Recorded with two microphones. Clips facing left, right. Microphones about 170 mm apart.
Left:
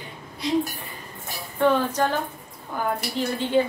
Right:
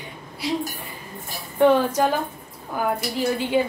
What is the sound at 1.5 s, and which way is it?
Speech, 15° right (ahead or behind).